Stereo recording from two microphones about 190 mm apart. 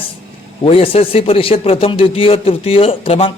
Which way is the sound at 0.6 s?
30° left (ahead or behind).